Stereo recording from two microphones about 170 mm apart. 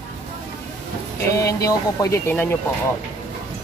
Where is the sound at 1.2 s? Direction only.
20° left (ahead or behind).